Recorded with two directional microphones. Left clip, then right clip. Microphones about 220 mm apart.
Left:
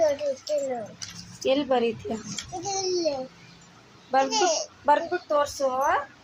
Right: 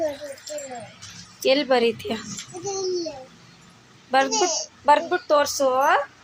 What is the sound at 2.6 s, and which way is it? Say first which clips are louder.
Speech: right 1 dB; 15° left (ahead or behind).